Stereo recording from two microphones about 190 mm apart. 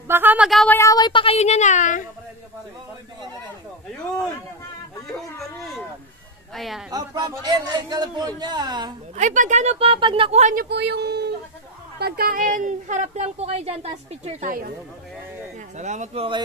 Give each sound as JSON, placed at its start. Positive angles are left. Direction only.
{"t": 0.1, "sound": "speech", "side_deg": -10}
{"t": 0.7, "sound": "speech", "side_deg": 20}
{"t": 5.6, "sound": "speech", "side_deg": 0}
{"t": 6.9, "sound": "a man's voice", "side_deg": -20}
{"t": 9.1, "sound": "a woman's voice", "side_deg": -40}
{"t": 10.5, "sound": "a woman's voice", "side_deg": -55}
{"t": 15.8, "sound": "a woman's voice", "side_deg": -40}